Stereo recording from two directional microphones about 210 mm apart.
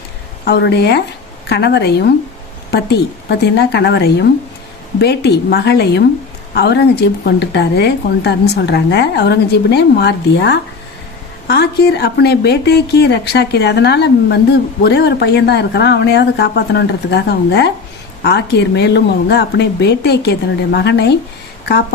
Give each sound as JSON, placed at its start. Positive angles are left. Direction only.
{"t": 0.4, "sound": "speech", "side_deg": 50}